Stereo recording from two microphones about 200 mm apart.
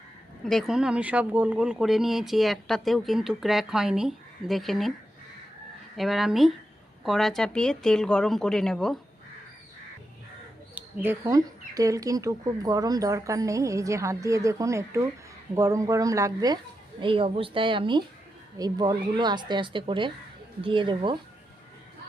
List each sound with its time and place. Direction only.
0.4 s speech: centre (ahead or behind)
6.0 s speech: centre (ahead or behind)
10.8 s bird: 10° right (ahead or behind)
11.2 s speech: 15° right (ahead or behind)